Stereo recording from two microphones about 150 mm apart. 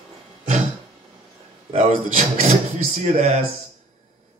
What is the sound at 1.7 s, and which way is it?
A man's voice, 50° right (ahead or behind).